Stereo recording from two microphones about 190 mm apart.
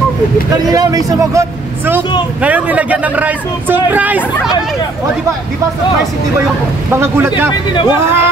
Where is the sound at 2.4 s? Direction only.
10° right (ahead or behind).